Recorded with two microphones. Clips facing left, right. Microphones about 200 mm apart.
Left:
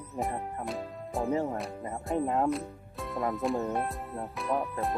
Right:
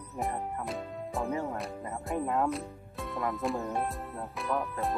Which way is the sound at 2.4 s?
Centre (ahead or behind).